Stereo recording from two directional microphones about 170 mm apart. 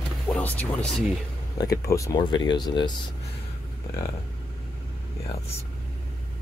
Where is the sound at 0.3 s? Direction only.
10° left (ahead or behind).